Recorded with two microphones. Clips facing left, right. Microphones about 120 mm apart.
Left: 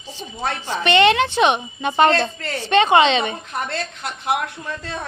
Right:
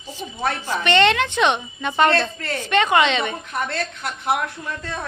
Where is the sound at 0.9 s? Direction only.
20° left (ahead or behind).